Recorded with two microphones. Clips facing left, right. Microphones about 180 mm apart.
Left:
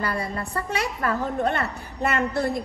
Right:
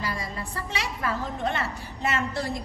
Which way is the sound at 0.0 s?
60° left (ahead or behind).